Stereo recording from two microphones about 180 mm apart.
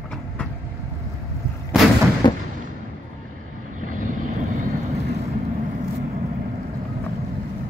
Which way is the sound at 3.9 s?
45° right (ahead or behind).